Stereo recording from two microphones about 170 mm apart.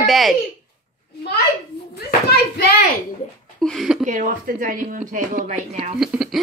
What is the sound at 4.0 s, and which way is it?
Speech, 50° right (ahead or behind).